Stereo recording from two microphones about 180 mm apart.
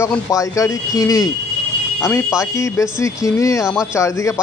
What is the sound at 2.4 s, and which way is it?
A man's voice, 15° left (ahead or behind).